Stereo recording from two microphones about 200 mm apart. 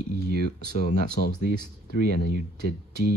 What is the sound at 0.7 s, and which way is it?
Speech, 40° left (ahead or behind).